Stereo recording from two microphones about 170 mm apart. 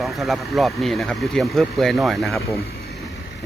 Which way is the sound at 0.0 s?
Centre (ahead or behind).